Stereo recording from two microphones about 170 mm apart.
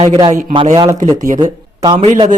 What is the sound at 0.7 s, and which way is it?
Speech, 25° right (ahead or behind).